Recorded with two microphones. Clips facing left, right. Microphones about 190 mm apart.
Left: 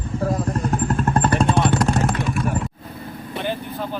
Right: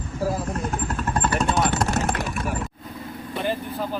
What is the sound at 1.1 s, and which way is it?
Vehicle, 55° left (ahead or behind).